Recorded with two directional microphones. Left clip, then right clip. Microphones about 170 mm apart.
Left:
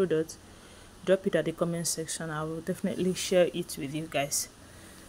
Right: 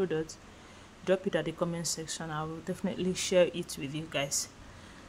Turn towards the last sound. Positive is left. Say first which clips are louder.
# left 2 dB
turn(degrees=15)  # may be behind; listen again after turning